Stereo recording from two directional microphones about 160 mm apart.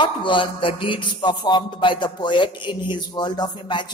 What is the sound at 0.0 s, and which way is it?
Music, 30° left (ahead or behind).